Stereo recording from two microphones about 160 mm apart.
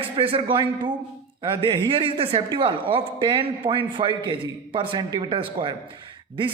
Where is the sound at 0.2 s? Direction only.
35° right (ahead or behind).